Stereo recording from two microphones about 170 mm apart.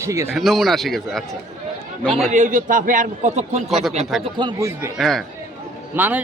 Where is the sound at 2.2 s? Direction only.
45° right (ahead or behind).